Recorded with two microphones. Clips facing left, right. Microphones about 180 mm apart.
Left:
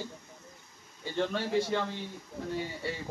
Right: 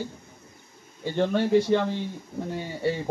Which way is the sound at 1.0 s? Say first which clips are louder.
Right 7 dB; 60° right (ahead or behind).